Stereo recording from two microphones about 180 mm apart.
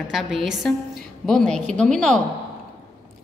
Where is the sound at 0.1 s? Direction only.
Centre (ahead or behind).